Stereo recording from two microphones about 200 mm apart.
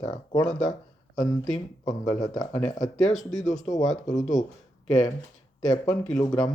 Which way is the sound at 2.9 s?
Centre (ahead or behind).